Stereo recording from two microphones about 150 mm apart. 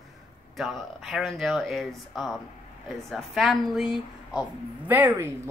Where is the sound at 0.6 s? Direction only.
Centre (ahead or behind).